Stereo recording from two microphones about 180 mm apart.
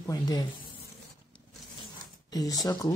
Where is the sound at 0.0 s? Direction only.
20° left (ahead or behind).